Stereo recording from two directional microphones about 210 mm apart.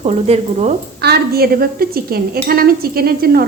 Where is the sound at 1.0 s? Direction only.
50° right (ahead or behind).